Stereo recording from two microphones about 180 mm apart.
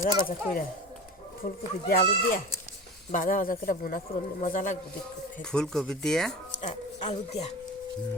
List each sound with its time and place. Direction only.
0.0 s a man's voice: 50° left (ahead or behind)
5.4 s speech: 5° left (ahead or behind)
6.6 s speech: 40° left (ahead or behind)